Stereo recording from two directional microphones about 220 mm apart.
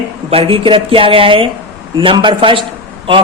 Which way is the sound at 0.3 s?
25° right (ahead or behind).